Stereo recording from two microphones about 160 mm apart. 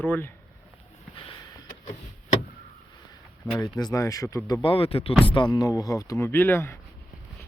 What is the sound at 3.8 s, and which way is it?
Speech, 20° left (ahead or behind).